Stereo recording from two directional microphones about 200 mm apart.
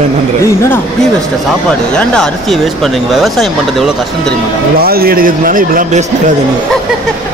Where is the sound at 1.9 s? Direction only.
5° left (ahead or behind).